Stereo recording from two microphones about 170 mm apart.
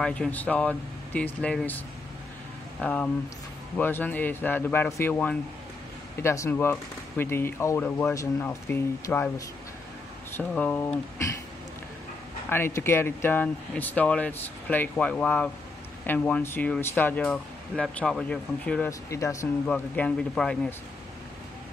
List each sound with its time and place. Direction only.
0.0 s speech: 5° left (ahead or behind)
2.8 s speech: 5° left (ahead or behind)
10.3 s speech: 10° left (ahead or behind)
12.4 s speech: 15° left (ahead or behind)
18.9 s speech: 20° left (ahead or behind)
19.6 s speech: 5° left (ahead or behind)